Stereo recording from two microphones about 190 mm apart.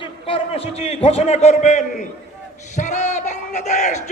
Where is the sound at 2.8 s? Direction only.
40° left (ahead or behind).